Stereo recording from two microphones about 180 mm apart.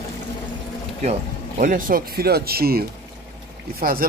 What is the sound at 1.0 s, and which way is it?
A man's voice, 45° right (ahead or behind).